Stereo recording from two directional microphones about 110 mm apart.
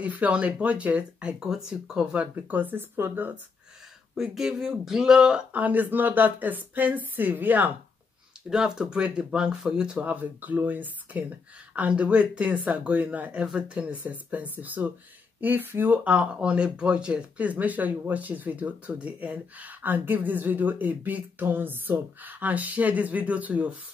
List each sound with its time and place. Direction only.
0.0 s speech: 15° right (ahead or behind)
4.1 s speech: 5° right (ahead or behind)